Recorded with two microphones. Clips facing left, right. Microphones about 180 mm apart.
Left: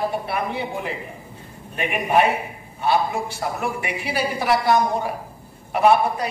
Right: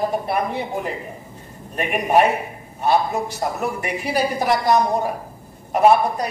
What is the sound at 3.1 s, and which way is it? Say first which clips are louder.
A woman's voice: right 2 dB; 40° right (ahead or behind).